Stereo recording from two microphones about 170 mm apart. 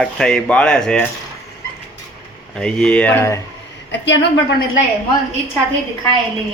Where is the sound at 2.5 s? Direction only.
5° left (ahead or behind).